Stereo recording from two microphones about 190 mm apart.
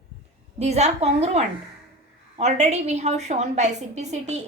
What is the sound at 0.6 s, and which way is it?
A woman's voice, 35° right (ahead or behind).